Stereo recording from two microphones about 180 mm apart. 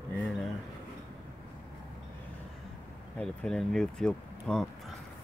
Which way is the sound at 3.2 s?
5° left (ahead or behind).